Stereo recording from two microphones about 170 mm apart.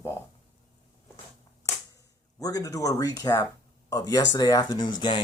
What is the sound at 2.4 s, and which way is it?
Speech, 20° left (ahead or behind).